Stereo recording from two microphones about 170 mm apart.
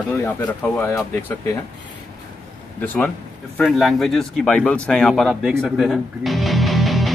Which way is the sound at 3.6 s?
Centre (ahead or behind).